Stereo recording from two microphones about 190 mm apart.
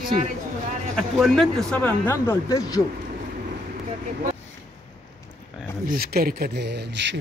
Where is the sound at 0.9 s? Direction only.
Centre (ahead or behind); by 2.8 s 20° left (ahead or behind).